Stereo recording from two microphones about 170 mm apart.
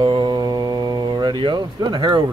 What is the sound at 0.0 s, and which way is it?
Mantra, 25° right (ahead or behind).